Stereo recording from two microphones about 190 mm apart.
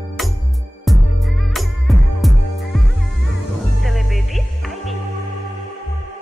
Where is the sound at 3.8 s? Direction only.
Centre (ahead or behind).